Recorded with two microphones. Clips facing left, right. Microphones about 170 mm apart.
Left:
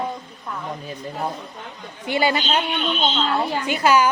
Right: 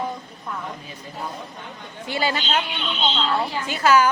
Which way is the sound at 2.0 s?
15° left (ahead or behind).